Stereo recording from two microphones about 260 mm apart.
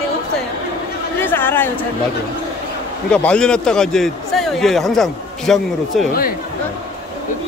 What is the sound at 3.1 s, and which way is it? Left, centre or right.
A man's voice, centre.